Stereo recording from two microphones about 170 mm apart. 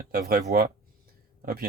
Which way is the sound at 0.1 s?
65° right (ahead or behind).